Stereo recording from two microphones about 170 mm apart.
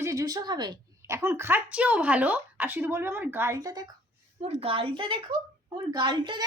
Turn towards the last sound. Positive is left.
turn(degrees=-25)  # may be behind; listen again after turning